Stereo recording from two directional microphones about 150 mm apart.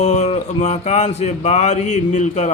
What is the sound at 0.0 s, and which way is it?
Speech, 50° left (ahead or behind).